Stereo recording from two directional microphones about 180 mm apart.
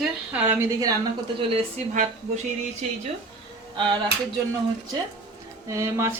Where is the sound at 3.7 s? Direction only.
25° right (ahead or behind).